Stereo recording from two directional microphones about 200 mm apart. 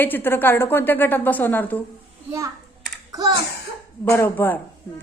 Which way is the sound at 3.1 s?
15° right (ahead or behind).